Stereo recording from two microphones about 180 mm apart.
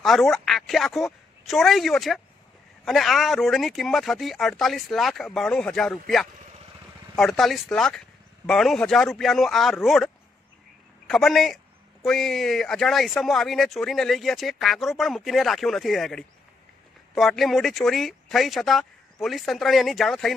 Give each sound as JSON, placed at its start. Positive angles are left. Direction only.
{"t": 0.0, "sound": "a woman's voice", "side_deg": 0}